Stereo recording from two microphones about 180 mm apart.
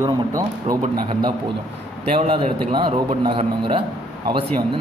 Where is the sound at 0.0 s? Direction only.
20° right (ahead or behind).